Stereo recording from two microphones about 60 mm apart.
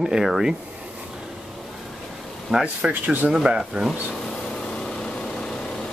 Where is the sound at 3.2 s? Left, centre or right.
Centre.